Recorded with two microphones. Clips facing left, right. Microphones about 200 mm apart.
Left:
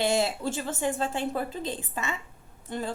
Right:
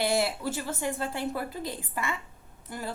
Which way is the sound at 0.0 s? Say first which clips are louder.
Left 1 dB; 20° left (ahead or behind).